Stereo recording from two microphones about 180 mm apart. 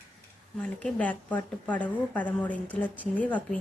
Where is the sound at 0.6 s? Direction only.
5° left (ahead or behind).